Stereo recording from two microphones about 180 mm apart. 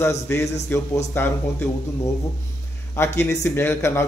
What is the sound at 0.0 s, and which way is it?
Speech, 15° left (ahead or behind).